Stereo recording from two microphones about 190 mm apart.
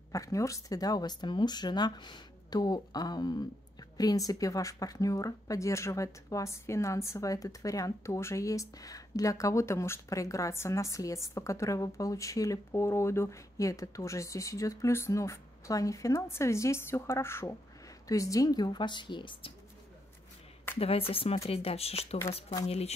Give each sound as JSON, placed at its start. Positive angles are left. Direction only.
{"t": 0.1, "sound": "speech", "side_deg": 15}
{"t": 20.8, "sound": "speech", "side_deg": 30}